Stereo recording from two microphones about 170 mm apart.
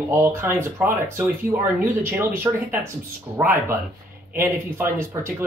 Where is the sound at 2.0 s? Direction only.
10° right (ahead or behind).